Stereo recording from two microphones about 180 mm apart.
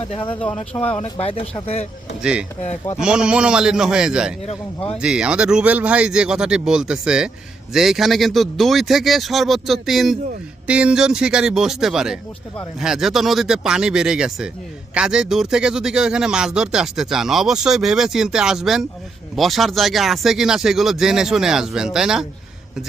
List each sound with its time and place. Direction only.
0.3 s speech: 5° left (ahead or behind)
1.2 s speech: 35° left (ahead or behind)
3.0 s speech: 5° right (ahead or behind)